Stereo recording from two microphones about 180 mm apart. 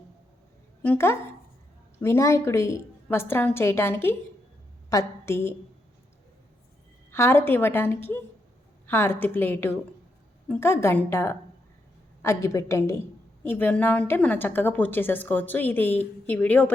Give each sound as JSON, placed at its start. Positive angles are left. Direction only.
{"t": 0.8, "sound": "a woman's voice", "side_deg": 10}
{"t": 7.1, "sound": "a woman's voice", "side_deg": 15}